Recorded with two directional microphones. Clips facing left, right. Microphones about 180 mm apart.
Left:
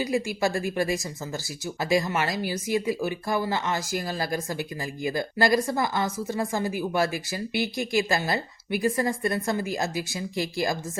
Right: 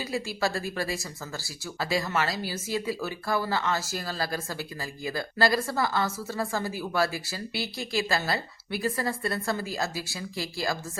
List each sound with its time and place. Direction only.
0.0 s a woman's voice: 15° left (ahead or behind)